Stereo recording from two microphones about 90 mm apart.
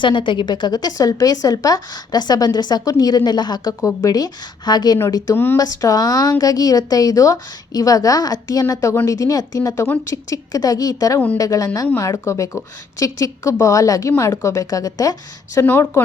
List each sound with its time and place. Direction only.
0.0 s speech: 65° left (ahead or behind)
3.8 s speech: 40° left (ahead or behind)
15.6 s speech: 30° left (ahead or behind)